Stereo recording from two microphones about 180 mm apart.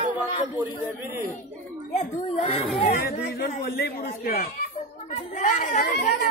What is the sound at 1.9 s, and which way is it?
Speech, 35° left (ahead or behind).